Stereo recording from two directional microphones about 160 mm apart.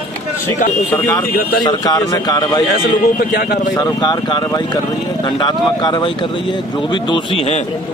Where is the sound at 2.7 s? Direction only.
70° left (ahead or behind).